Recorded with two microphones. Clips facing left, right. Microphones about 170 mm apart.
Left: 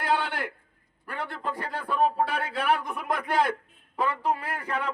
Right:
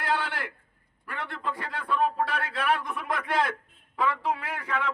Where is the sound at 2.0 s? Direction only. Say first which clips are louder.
Left 2 dB; 30° left (ahead or behind).